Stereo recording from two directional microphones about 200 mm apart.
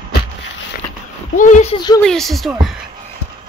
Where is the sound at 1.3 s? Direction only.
40° left (ahead or behind).